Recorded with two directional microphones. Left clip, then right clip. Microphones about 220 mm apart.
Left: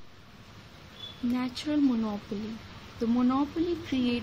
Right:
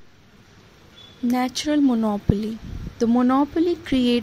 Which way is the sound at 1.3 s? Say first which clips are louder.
Right 10 dB; 40° right (ahead or behind).